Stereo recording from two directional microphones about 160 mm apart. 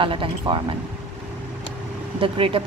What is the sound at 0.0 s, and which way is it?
Speech, 30° right (ahead or behind).